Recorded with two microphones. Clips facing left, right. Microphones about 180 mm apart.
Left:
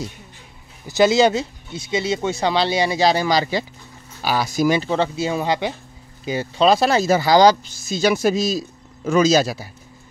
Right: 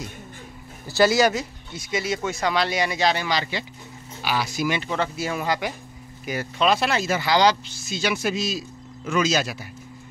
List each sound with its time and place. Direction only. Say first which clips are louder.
0.8 s speech: left 3 dB; 20° left (ahead or behind); by 9.7 s 35° left (ahead or behind)